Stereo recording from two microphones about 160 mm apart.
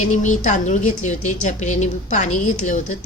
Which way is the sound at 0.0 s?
50° left (ahead or behind).